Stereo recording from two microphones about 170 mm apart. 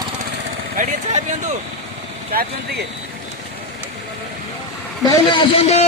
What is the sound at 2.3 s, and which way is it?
Speech, 60° right (ahead or behind).